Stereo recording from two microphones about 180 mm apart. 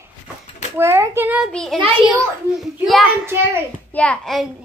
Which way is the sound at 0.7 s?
15° right (ahead or behind).